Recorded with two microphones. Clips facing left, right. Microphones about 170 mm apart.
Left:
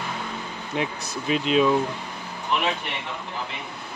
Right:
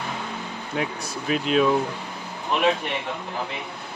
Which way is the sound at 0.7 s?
Centre (ahead or behind).